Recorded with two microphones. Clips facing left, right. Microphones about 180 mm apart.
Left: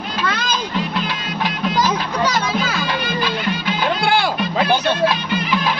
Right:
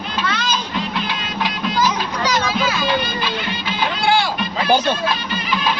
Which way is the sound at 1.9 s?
55° left (ahead or behind).